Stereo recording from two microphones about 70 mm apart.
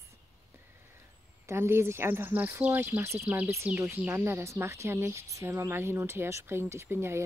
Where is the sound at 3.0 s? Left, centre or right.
Right.